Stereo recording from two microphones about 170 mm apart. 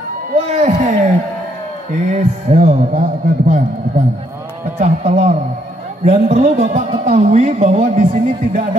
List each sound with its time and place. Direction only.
0.5 s a man's voice: 40° right (ahead or behind)
4.7 s a man's voice: 45° right (ahead or behind)